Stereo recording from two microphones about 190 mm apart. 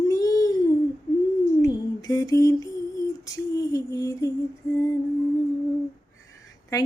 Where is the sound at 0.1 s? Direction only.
20° left (ahead or behind).